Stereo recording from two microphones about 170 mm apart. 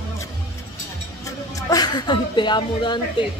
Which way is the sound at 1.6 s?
20° left (ahead or behind).